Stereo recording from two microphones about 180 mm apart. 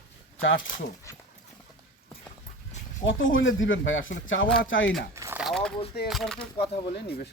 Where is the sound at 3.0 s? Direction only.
90° left.